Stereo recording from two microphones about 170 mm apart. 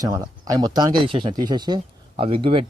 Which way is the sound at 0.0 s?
20° right (ahead or behind).